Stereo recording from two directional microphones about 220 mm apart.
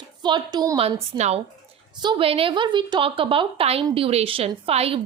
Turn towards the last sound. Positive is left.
turn(degrees=-25)  # may be behind; listen again after turning